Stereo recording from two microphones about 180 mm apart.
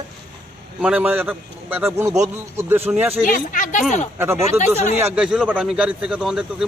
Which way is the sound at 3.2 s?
50° left (ahead or behind).